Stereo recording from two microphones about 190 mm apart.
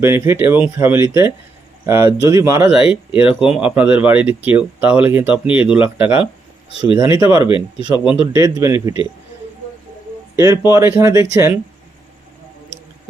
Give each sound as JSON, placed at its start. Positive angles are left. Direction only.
{"t": 0.0, "sound": "speech", "side_deg": -15}
{"t": 6.7, "sound": "speech", "side_deg": 30}
{"t": 7.0, "sound": "speech", "side_deg": -10}
{"t": 7.4, "sound": "speech", "side_deg": 25}
{"t": 8.2, "sound": "speech", "side_deg": -20}
{"t": 10.3, "sound": "speech", "side_deg": -15}